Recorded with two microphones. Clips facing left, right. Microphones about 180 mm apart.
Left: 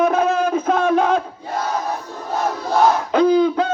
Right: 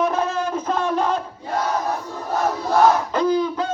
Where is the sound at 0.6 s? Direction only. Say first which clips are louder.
Left 3 dB; 55° left (ahead or behind).